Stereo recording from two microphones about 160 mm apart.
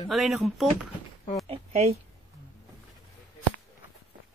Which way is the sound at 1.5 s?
40° right (ahead or behind).